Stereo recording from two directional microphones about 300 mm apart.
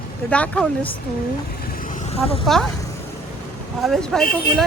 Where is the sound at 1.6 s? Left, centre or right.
Left.